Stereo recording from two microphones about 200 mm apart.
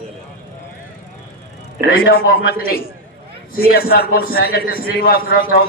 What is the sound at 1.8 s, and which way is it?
A man's voice, 50° left (ahead or behind).